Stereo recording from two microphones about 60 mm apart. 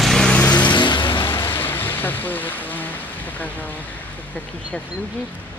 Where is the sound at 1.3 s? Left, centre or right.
Left.